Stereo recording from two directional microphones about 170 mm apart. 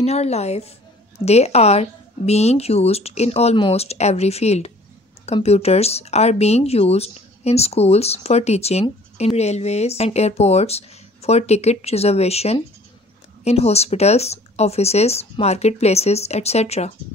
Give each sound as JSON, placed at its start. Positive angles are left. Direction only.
{"t": 0.0, "sound": "speech", "side_deg": 40}